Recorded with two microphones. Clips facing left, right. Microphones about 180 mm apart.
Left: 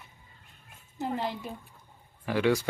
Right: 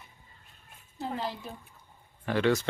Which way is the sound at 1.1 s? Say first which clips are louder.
Left 1 dB; 20° left (ahead or behind).